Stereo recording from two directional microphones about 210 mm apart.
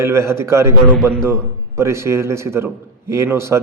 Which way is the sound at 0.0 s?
10° right (ahead or behind).